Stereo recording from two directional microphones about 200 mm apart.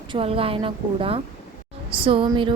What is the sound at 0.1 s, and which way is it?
A woman's voice, 30° right (ahead or behind).